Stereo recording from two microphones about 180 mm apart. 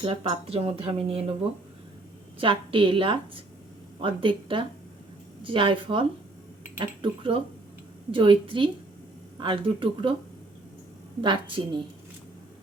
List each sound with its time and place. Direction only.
0.0 s speech: 30° right (ahead or behind)
2.4 s a woman's voice: 30° right (ahead or behind)
11.2 s a woman's voice: 30° right (ahead or behind)